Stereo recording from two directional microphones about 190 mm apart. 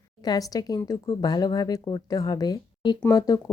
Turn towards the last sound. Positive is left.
turn(degrees=20)  # may be behind; listen again after turning